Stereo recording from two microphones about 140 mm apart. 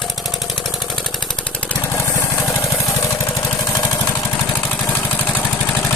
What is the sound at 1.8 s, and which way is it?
Jackhammer, 15° left (ahead or behind).